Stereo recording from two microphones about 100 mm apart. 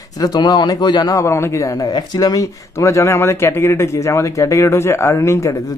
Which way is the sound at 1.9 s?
40° left (ahead or behind).